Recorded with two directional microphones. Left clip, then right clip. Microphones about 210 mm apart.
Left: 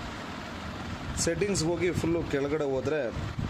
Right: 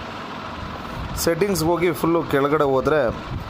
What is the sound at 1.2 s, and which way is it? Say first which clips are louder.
Speech: right 8 dB; 20° right (ahead or behind).